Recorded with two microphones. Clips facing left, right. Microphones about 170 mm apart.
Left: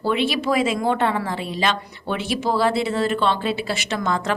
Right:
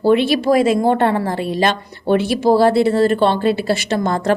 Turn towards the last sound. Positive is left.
turn(degrees=-40)  # may be behind; listen again after turning